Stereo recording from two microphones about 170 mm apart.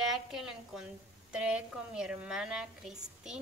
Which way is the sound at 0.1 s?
Centre (ahead or behind).